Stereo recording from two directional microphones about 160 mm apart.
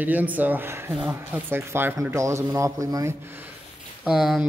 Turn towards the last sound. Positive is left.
turn(degrees=0)  # may be behind; listen again after turning